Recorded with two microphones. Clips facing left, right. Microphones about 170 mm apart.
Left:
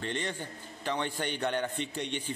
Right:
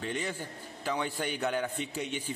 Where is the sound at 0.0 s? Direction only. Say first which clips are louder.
Even; 5° right (ahead or behind).